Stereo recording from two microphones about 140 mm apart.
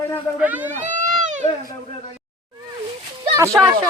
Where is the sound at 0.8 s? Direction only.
60° right (ahead or behind).